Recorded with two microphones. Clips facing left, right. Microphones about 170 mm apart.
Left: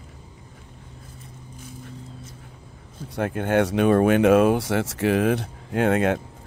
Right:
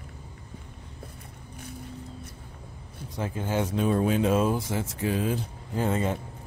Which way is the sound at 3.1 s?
65° left (ahead or behind).